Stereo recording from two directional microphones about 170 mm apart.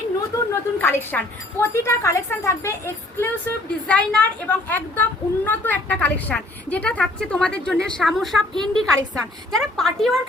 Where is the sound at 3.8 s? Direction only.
5° left (ahead or behind).